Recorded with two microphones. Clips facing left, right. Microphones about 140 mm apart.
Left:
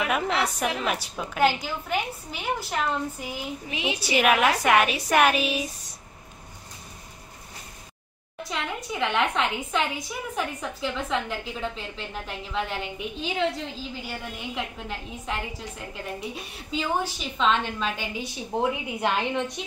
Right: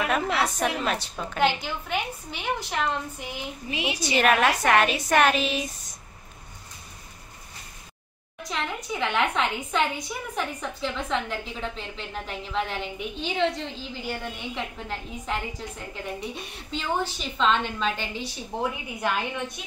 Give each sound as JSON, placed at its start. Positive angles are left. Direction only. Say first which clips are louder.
{"t": 0.0, "sound": "a woman's voice", "louder": "even", "side_deg": 10}
{"t": 3.7, "sound": "a woman's voice", "louder": "even", "side_deg": 20}
{"t": 4.0, "sound": "a woman's voice", "louder": "even", "side_deg": 5}
{"t": 8.5, "sound": "a woman's voice", "louder": "right 1 dB", "side_deg": 5}
{"t": 16.7, "sound": "a woman's voice", "louder": "left 1 dB", "side_deg": 5}
{"t": 18.6, "sound": "a woman's voice", "louder": "left 3 dB", "side_deg": 20}